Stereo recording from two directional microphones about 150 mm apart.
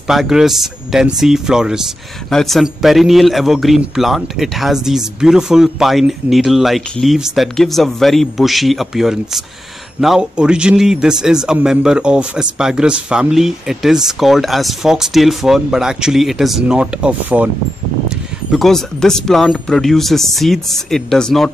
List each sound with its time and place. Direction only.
0.1 s a man's voice: 5° right (ahead or behind)